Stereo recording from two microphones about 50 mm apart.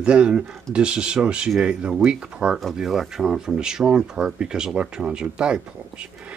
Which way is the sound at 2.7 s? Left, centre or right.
Centre.